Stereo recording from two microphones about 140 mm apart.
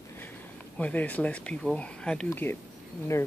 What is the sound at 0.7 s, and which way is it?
Speech, 10° left (ahead or behind).